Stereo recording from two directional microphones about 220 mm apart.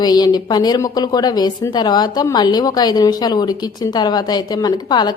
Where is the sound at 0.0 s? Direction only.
20° left (ahead or behind).